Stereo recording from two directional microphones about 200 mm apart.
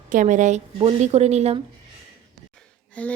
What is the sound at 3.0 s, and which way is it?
Speech, 5° left (ahead or behind).